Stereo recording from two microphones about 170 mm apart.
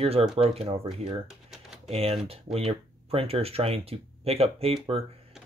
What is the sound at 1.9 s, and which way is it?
Speech, 35° right (ahead or behind).